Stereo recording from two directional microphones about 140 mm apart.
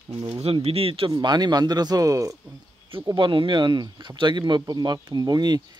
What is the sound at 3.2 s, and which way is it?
Speech, 35° right (ahead or behind).